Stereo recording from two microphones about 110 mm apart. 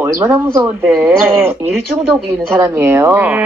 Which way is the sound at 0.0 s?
20° right (ahead or behind).